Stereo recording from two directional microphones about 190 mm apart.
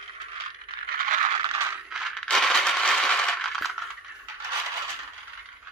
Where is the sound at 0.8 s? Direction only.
50° right (ahead or behind).